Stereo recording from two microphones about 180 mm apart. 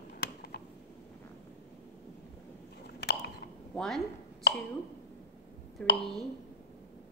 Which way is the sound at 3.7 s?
Centre (ahead or behind).